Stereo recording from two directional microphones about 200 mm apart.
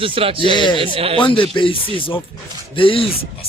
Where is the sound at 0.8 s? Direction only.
25° right (ahead or behind).